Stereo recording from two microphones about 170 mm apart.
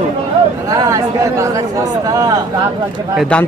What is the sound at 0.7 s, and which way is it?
Speech, 20° right (ahead or behind).